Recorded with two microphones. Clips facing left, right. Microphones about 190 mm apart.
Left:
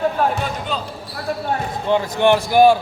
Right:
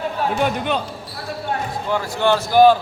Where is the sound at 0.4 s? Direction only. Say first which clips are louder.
Right 4 dB; 65° right (ahead or behind).